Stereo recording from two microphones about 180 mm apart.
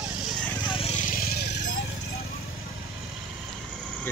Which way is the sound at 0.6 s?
30° left (ahead or behind).